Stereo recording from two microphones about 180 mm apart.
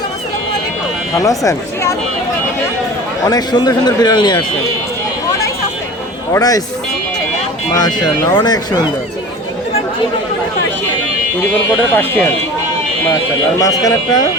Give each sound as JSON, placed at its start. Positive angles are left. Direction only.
{"t": 1.1, "sound": "speech", "side_deg": 20}
{"t": 3.2, "sound": "a man's voice", "side_deg": 20}
{"t": 6.3, "sound": "a man's voice", "side_deg": 20}
{"t": 7.7, "sound": "a man's voice", "side_deg": 20}
{"t": 11.9, "sound": "speech", "side_deg": 10}
{"t": 13.6, "sound": "a man's voice", "side_deg": 20}